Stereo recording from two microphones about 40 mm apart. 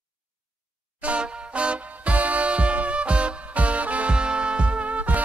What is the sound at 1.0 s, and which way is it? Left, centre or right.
Music, right.